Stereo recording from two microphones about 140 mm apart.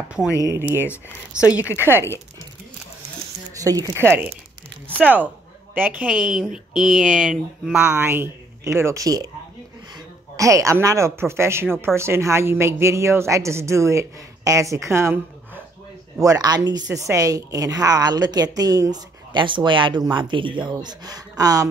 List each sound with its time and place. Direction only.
0.5 s speech: 15° right (ahead or behind)
0.7 s speech: 15° left (ahead or behind)
3.5 s speech: 25° right (ahead or behind)